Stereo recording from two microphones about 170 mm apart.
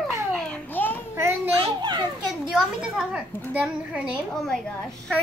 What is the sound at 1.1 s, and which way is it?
Speech, 15° right (ahead or behind).